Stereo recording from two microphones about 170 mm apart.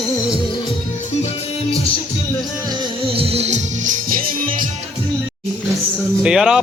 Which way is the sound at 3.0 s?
35° right (ahead or behind).